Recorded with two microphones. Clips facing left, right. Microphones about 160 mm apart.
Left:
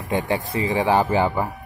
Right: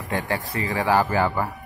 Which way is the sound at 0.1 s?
20° left (ahead or behind).